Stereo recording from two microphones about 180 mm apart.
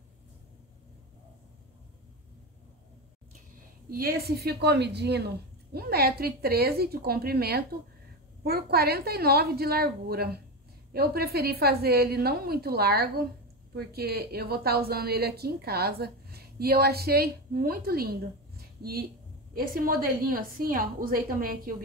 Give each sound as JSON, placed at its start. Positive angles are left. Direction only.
{"t": 3.9, "sound": "a woman's voice", "side_deg": -60}